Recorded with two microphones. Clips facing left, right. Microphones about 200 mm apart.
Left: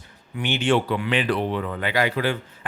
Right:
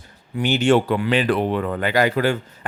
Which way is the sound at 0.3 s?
40° right (ahead or behind).